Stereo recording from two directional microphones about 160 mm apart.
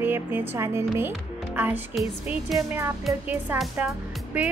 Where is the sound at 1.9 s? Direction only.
Centre (ahead or behind).